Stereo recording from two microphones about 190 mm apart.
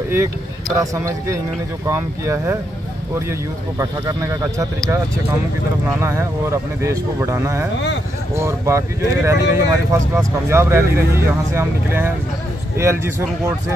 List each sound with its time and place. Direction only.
0.1 s speech: 15° right (ahead or behind)